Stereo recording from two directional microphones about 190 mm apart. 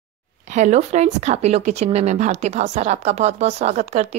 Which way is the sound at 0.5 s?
40° right (ahead or behind).